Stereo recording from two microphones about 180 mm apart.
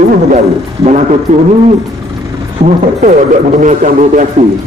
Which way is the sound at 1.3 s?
45° right (ahead or behind).